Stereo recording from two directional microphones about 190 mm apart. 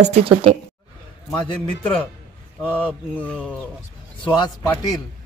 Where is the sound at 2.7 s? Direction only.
10° left (ahead or behind).